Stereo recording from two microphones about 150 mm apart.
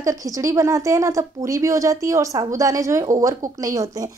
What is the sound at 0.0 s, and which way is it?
A woman's voice, 20° right (ahead or behind).